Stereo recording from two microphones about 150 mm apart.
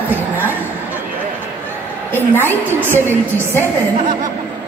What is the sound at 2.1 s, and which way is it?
Speech, 15° left (ahead or behind).